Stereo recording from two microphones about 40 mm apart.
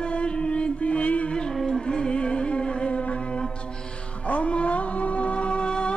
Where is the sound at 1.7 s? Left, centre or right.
Centre.